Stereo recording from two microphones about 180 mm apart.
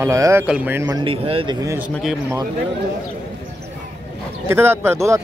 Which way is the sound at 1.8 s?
5° right (ahead or behind).